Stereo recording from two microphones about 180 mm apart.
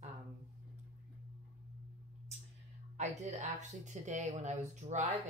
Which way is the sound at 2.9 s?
40° right (ahead or behind).